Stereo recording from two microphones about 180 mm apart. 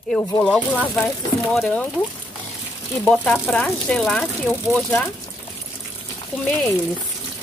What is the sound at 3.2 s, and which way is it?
Speech, 5° left (ahead or behind).